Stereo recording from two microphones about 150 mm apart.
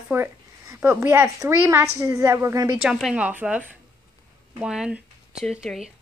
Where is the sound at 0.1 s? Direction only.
15° right (ahead or behind).